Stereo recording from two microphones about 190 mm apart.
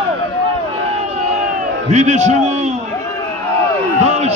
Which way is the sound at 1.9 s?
35° right (ahead or behind).